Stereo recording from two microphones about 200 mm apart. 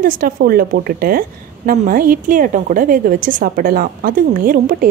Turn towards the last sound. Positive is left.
turn(degrees=-45)  # may be behind; listen again after turning